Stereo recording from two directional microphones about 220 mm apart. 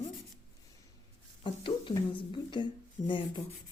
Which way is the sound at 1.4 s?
20° left (ahead or behind).